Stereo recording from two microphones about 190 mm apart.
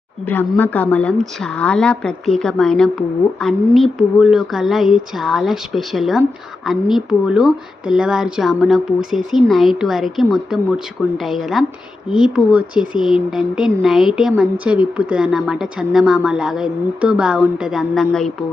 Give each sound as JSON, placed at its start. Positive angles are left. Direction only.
{"t": 0.3, "sound": "a woman's voice", "side_deg": 10}